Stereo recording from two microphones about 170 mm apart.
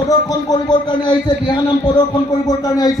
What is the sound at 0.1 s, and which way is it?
A man's voice, 20° left (ahead or behind).